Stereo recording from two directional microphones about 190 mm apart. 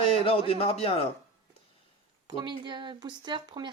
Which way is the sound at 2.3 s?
25° right (ahead or behind).